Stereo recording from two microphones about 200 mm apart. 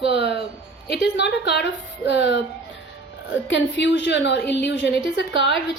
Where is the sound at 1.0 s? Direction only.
55° left (ahead or behind).